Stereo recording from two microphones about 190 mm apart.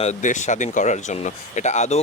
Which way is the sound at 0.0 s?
40° left (ahead or behind).